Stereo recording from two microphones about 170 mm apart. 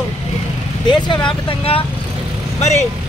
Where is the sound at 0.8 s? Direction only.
25° left (ahead or behind).